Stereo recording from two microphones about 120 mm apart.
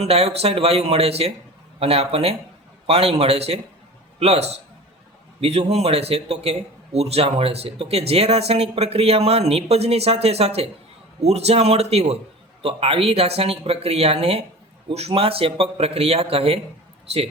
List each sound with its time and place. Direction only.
0.0 s a man's voice: 60° right (ahead or behind)